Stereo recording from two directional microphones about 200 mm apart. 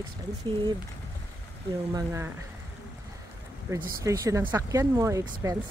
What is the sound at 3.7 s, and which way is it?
Speech, 15° right (ahead or behind).